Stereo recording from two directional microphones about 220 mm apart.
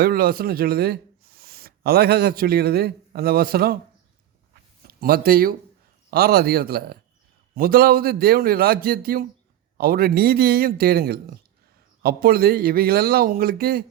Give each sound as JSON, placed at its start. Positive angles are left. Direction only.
{"t": 0.0, "sound": "speech", "side_deg": -45}
{"t": 4.9, "sound": "speech", "side_deg": -45}